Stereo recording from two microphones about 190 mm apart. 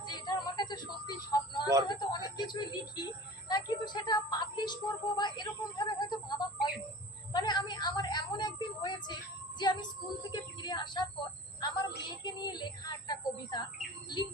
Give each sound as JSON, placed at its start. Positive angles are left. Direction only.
{"t": 0.0, "sound": "music", "side_deg": 20}
{"t": 1.9, "sound": "speech", "side_deg": 20}
{"t": 10.3, "sound": "speech", "side_deg": 25}